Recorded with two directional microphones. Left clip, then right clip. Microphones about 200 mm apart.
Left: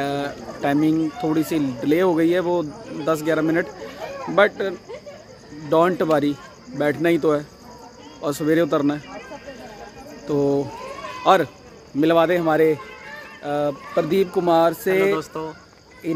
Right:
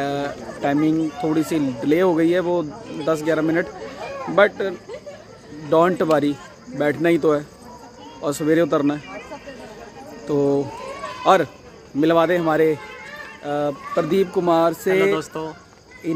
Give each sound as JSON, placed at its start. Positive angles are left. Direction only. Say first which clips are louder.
{"t": 0.0, "sound": "a sound", "louder": "right 1 dB", "side_deg": 5}
{"t": 1.2, "sound": "speech", "louder": "right 1 dB", "side_deg": 0}
{"t": 10.2, "sound": "speech", "louder": "right 1 dB", "side_deg": 0}
{"t": 15.1, "sound": "speech", "louder": "right 1 dB", "side_deg": -15}